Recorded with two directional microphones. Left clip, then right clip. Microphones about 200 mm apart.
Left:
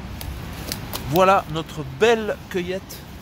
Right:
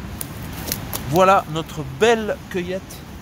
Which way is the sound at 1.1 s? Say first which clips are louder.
Right 2 dB; 5° left (ahead or behind).